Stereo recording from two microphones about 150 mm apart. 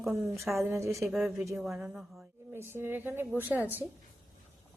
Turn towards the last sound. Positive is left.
turn(degrees=-10)  # may be behind; listen again after turning